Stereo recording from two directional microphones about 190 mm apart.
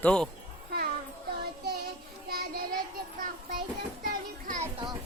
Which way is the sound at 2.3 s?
55° right (ahead or behind).